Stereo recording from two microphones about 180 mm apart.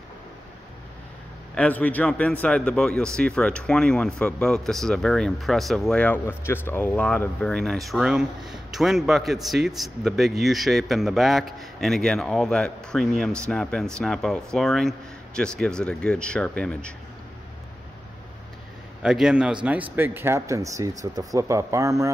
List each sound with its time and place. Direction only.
1.5 s a man's voice: 5° left (ahead or behind)
19.0 s speech: 5° right (ahead or behind)